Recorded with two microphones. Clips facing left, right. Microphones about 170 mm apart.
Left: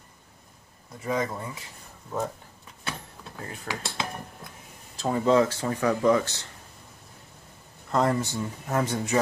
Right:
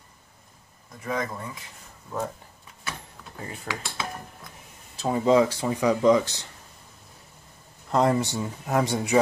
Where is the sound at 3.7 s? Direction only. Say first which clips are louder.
Even; 15° right (ahead or behind).